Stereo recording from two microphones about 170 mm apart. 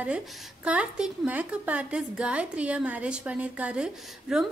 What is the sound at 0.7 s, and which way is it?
A woman's voice, 5° right (ahead or behind).